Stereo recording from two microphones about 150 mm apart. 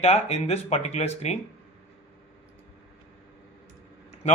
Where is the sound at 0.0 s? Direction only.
45° left (ahead or behind).